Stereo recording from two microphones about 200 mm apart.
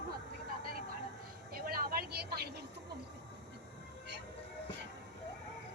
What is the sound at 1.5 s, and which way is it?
Vehicle, 50° right (ahead or behind).